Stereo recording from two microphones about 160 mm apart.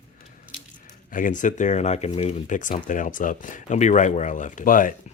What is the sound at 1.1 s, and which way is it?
Speech, 55° left (ahead or behind).